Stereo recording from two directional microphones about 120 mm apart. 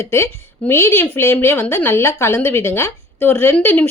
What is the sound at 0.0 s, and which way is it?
A woman's voice, 20° left (ahead or behind).